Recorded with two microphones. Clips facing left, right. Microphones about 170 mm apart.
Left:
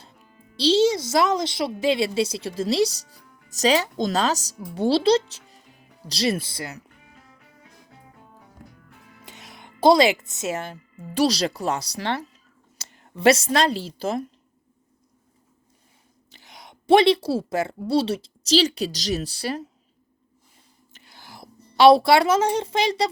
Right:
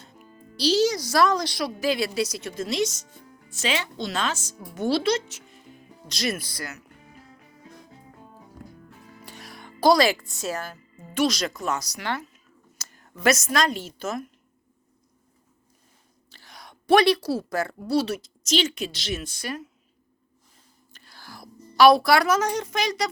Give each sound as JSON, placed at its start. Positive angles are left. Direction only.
{"t": 0.5, "sound": "a woman's voice", "side_deg": 25}
{"t": 9.2, "sound": "a woman's voice", "side_deg": 20}
{"t": 16.3, "sound": "a sound", "side_deg": 20}
{"t": 17.8, "sound": "a woman's voice", "side_deg": 30}
{"t": 20.9, "sound": "music", "side_deg": 20}